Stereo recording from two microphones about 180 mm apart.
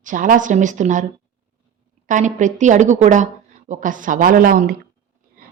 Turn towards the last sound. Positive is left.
turn(degrees=-50)  # may be behind; listen again after turning